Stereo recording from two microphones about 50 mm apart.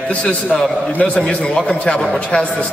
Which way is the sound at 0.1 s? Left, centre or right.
Left.